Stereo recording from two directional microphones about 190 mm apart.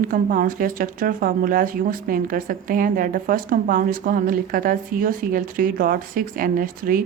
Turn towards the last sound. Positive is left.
turn(degrees=-45)  # may be behind; listen again after turning